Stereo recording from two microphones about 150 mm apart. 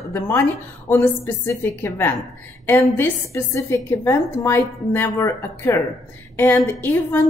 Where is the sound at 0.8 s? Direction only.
15° left (ahead or behind).